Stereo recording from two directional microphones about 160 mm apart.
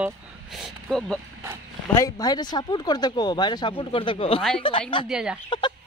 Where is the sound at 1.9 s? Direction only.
20° left (ahead or behind).